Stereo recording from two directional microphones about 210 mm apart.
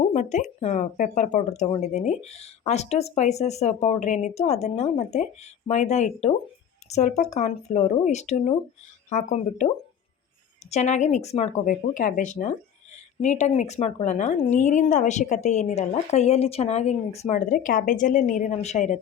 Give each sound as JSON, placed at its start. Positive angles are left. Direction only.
{"t": 0.1, "sound": "speech", "side_deg": 35}
{"t": 10.7, "sound": "speech", "side_deg": 35}